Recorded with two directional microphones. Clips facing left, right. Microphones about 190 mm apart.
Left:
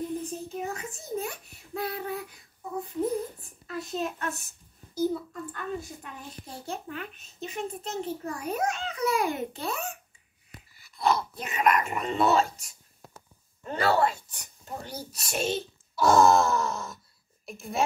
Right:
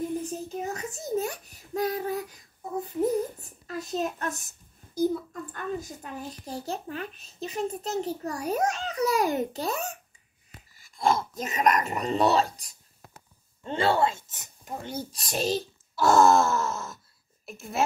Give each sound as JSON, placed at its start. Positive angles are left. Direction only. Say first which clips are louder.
{"t": 0.6, "sound": "a child's voice", "louder": "right 1 dB", "side_deg": -40}
{"t": 5.5, "sound": "a child's voice", "louder": "right 2 dB", "side_deg": -40}
{"t": 16.0, "sound": "groan", "louder": "even", "side_deg": 0}